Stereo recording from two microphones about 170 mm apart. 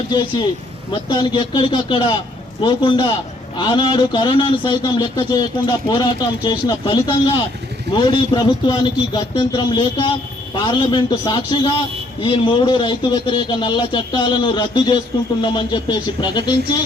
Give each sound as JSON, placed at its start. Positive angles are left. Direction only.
{"t": 0.1, "sound": "a man's voice", "side_deg": 25}